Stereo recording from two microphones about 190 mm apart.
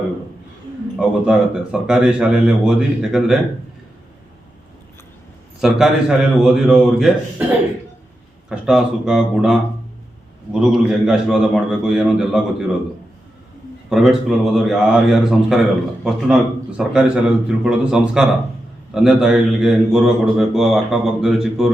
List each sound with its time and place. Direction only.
0.9 s speech: 5° right (ahead or behind)
5.5 s speech: centre (ahead or behind)
8.4 s speech: 5° right (ahead or behind)
13.9 s speech: centre (ahead or behind)